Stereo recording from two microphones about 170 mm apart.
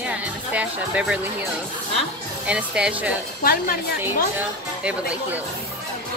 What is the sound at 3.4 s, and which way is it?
Speech, 60° left (ahead or behind).